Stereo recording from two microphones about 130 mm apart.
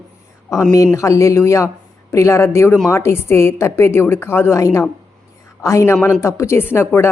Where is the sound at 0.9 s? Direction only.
25° left (ahead or behind).